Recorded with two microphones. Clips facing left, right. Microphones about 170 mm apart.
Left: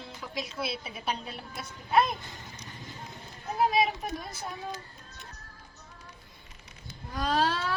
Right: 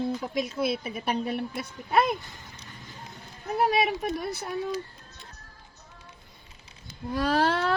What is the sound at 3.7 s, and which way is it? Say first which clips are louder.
Speech: right 2 dB; 65° right (ahead or behind).